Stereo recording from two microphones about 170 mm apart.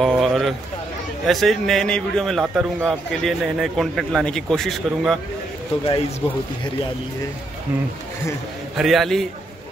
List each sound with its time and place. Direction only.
0.0 s a sound: centre (ahead or behind)
1.2 s a man's voice: centre (ahead or behind)
6.2 s speech: 30° left (ahead or behind)
8.7 s a man's voice: centre (ahead or behind)